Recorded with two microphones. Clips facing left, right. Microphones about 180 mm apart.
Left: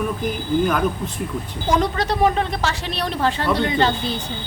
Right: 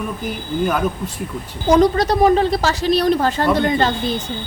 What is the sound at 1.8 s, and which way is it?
Speech, 40° right (ahead or behind).